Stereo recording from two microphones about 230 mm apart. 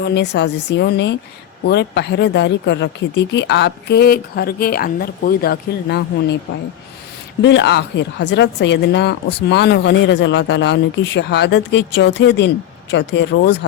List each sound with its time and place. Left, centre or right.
0.0 s a woman's voice: left
7.4 s a woman's voice: left